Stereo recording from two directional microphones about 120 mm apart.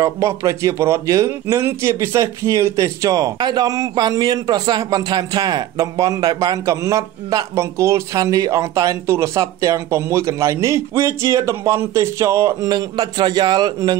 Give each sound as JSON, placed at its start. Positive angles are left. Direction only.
{"t": 0.0, "sound": "a man's voice", "side_deg": -25}
{"t": 12.7, "sound": "a man's voice", "side_deg": -35}